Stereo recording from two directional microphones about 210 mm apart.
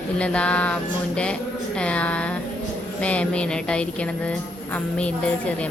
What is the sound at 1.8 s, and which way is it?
A woman's voice, 5° left (ahead or behind).